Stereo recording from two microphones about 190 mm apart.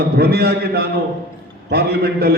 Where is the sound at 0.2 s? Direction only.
60° right (ahead or behind).